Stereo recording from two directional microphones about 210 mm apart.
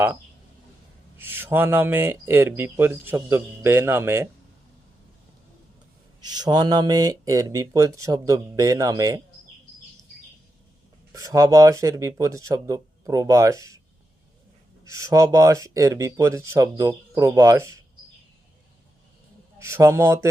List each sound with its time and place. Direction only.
1.2 s speech: 10° right (ahead or behind)
6.3 s speech: 20° right (ahead or behind)
11.1 s speech: 15° right (ahead or behind)
14.8 s speech: 15° right (ahead or behind)
19.5 s speech: 15° right (ahead or behind)